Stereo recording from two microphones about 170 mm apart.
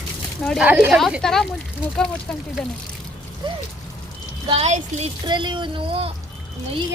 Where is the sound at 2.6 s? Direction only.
5° left (ahead or behind).